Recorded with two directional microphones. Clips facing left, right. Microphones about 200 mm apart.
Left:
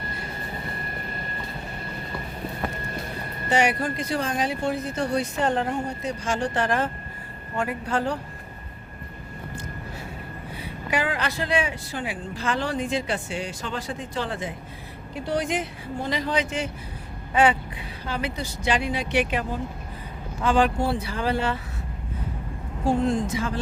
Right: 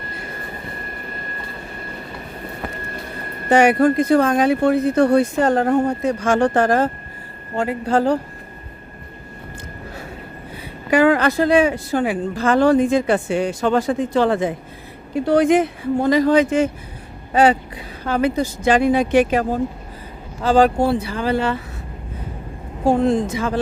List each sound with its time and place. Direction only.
3.5 s speech: 55° right (ahead or behind)
7.5 s speech: 30° right (ahead or behind)
10.9 s speech: 50° right (ahead or behind)
17.3 s a sound: 40° right (ahead or behind)
18.0 s speech: 45° right (ahead or behind)
22.9 s a woman's voice: 70° right (ahead or behind)